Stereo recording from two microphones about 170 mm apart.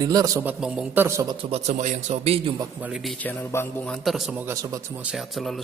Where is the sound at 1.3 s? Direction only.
40° right (ahead or behind).